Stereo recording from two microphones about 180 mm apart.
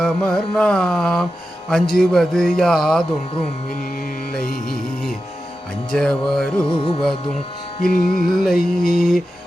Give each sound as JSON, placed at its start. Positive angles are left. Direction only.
{"t": 0.0, "sound": "a man's voice", "side_deg": 5}
{"t": 5.9, "sound": "a man's voice", "side_deg": 5}
{"t": 6.7, "sound": "music", "side_deg": 25}
{"t": 7.8, "sound": "music", "side_deg": 55}
{"t": 8.1, "sound": "a man's voice", "side_deg": 0}